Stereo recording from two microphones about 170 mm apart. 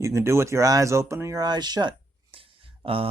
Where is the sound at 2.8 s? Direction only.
35° right (ahead or behind).